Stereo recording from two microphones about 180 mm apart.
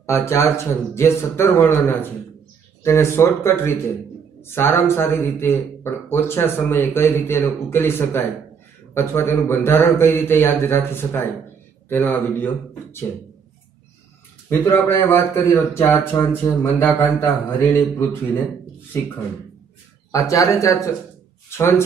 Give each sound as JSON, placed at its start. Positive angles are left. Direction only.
{"t": 0.0, "sound": "a man's voice", "side_deg": 15}
{"t": 14.5, "sound": "a man's voice", "side_deg": 15}
{"t": 20.1, "sound": "a man's voice", "side_deg": 20}